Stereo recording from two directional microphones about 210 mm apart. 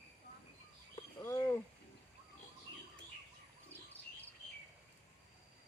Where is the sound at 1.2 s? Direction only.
15° left (ahead or behind).